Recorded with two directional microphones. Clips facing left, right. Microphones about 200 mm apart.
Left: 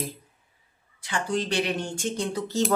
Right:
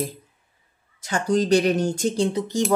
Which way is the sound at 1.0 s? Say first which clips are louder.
Right 6 dB; 40° right (ahead or behind).